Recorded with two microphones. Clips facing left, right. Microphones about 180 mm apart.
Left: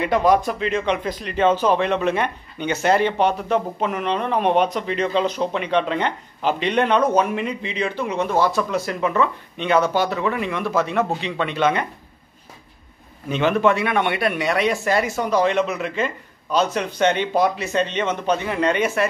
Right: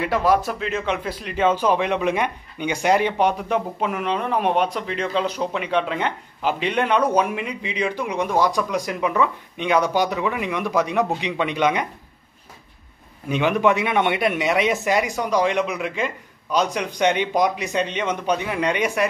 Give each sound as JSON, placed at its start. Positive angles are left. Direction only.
{"t": 0.0, "sound": "speech", "side_deg": -5}
{"t": 13.3, "sound": "speech", "side_deg": -15}